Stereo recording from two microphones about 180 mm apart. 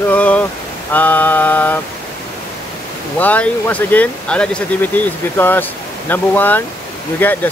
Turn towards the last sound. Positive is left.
turn(degrees=10)  # may be behind; listen again after turning